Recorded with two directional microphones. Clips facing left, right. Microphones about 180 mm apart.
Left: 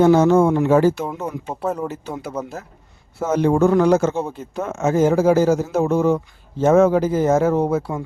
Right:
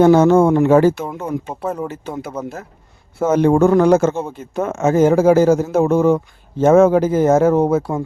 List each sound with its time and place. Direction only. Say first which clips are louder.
0.0 s speech: right 3 dB; 55° right (ahead or behind)
1.0 s speech: right 2 dB; 5° left (ahead or behind)
3.2 s speech: right 4 dB; 50° right (ahead or behind)